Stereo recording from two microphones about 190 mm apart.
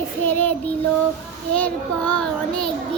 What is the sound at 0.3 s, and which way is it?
Child singing, 10° left (ahead or behind).